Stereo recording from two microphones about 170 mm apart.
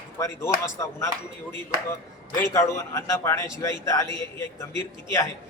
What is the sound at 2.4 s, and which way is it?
A man's voice, 20° left (ahead or behind).